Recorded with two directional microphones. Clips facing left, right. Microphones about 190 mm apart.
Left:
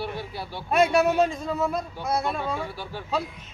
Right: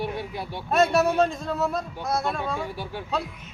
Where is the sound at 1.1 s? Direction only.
5° left (ahead or behind).